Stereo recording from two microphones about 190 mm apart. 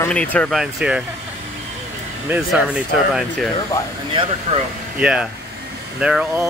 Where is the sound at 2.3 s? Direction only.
5° right (ahead or behind).